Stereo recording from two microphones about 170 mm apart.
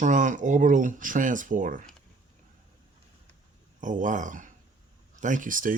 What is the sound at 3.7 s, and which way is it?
Speech, 50° right (ahead or behind).